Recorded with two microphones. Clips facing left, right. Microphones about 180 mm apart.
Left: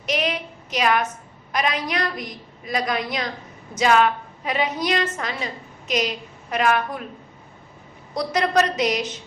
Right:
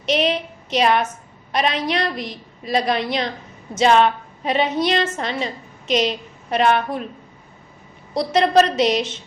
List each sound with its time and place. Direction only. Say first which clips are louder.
0.0 s a woman's voice: right 5 dB; 25° right (ahead or behind)
8.1 s a woman's voice: right 5 dB; 25° right (ahead or behind)